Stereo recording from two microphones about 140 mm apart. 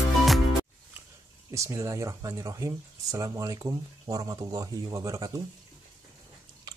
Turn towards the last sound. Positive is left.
turn(degrees=-25)  # may be behind; listen again after turning